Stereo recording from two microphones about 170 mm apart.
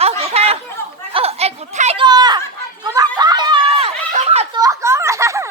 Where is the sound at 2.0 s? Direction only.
25° right (ahead or behind).